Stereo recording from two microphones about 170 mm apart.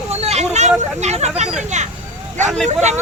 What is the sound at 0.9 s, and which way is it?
Speech, 40° right (ahead or behind).